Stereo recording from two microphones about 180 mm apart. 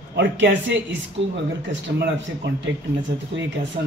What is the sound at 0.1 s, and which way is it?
Speech, 70° right (ahead or behind).